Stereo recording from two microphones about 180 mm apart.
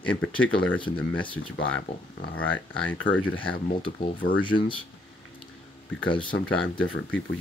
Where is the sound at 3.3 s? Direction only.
25° left (ahead or behind).